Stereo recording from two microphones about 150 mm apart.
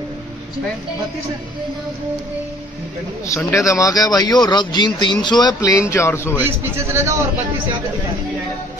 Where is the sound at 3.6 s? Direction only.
20° left (ahead or behind).